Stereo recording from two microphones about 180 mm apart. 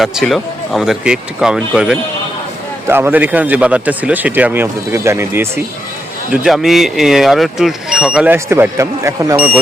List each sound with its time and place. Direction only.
0.0 s speech: centre (ahead or behind)
6.3 s speech: 5° right (ahead or behind)